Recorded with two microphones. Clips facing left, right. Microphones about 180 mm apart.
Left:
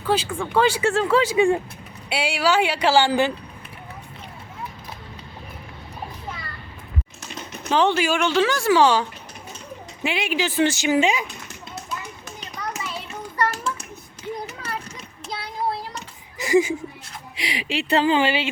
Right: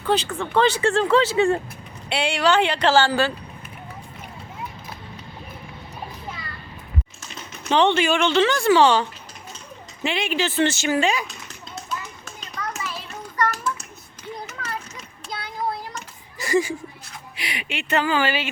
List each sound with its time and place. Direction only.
0.0 s speech: 10° left (ahead or behind)
7.7 s speech: 5° left (ahead or behind)
12.8 s a sound: 25° left (ahead or behind)
16.4 s speech: 15° left (ahead or behind)